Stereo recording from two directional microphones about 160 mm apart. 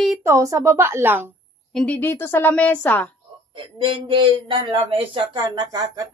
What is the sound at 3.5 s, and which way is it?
Speech, 30° right (ahead or behind).